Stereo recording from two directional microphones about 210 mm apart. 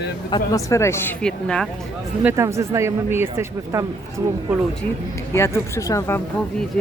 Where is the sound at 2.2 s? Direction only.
10° right (ahead or behind).